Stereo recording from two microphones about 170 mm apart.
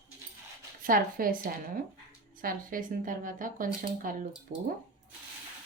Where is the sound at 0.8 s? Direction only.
55° right (ahead or behind).